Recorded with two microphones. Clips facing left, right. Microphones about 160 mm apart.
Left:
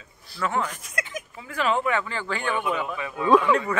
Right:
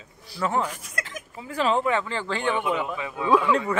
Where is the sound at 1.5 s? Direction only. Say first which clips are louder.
Right 1 dB; 30° right (ahead or behind).